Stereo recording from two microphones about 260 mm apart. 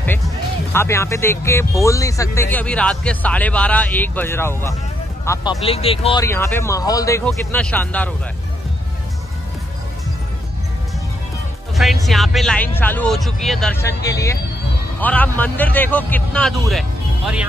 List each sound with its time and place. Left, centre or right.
0.7 s speech: centre
6.2 s speech: centre
11.7 s speech: centre